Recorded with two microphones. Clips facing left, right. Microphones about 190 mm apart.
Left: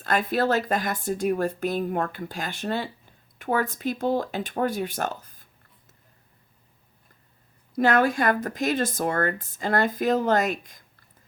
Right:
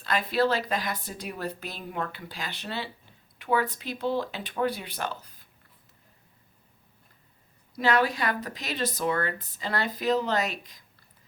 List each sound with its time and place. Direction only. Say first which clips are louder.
0.0 s a woman's voice: left 2 dB; 50° left (ahead or behind)
7.8 s a woman's voice: left 4 dB; 50° left (ahead or behind)